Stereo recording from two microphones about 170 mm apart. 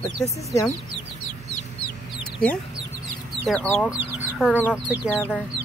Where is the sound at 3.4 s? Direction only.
5° left (ahead or behind).